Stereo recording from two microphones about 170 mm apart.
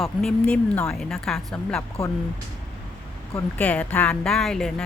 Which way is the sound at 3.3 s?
10° left (ahead or behind).